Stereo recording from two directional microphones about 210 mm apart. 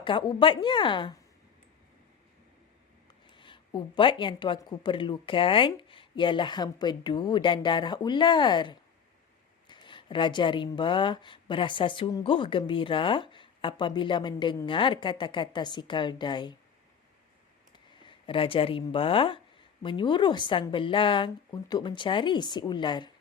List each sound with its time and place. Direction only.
0.0 s speech: 20° left (ahead or behind)
3.3 s speech: 25° left (ahead or behind)
18.0 s speech: 25° left (ahead or behind)